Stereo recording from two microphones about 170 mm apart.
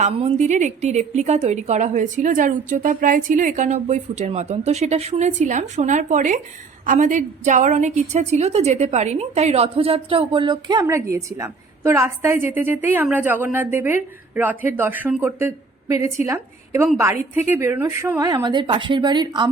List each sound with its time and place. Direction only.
0.0 s a woman's voice: 35° right (ahead or behind)